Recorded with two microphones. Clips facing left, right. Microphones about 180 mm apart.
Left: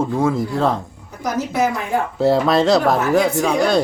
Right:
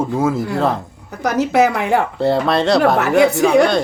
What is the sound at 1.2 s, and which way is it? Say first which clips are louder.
Speech: right 5 dB; 75° right (ahead or behind).